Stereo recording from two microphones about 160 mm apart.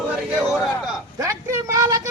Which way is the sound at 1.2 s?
20° right (ahead or behind).